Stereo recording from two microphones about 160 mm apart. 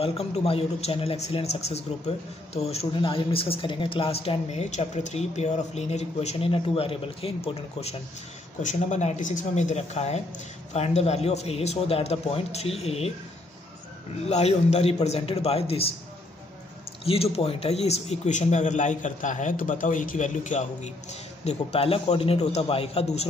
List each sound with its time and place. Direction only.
0.0 s speech: 40° left (ahead or behind)
8.6 s a man's voice: 50° left (ahead or behind)
14.3 s speech: 40° left (ahead or behind)
17.0 s a man's voice: 40° left (ahead or behind)